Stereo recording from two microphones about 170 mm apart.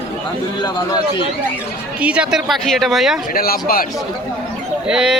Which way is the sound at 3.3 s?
60° left (ahead or behind).